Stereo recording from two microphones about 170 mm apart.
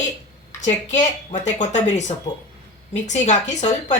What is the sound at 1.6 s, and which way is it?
A woman's voice, 45° left (ahead or behind).